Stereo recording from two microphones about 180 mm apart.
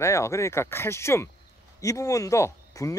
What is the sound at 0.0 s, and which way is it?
Speech, 15° left (ahead or behind).